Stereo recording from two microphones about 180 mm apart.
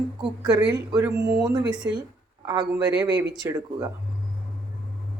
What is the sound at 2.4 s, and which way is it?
Speech, 20° right (ahead or behind).